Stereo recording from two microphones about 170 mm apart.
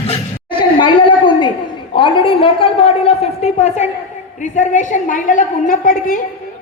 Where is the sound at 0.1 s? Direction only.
30° left (ahead or behind).